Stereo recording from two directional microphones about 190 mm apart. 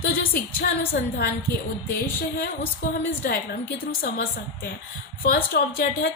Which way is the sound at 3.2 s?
50° left (ahead or behind).